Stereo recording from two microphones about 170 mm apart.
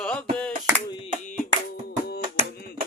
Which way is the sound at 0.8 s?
25° left (ahead or behind).